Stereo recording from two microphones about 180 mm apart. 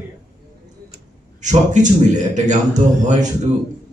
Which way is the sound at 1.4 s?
40° right (ahead or behind).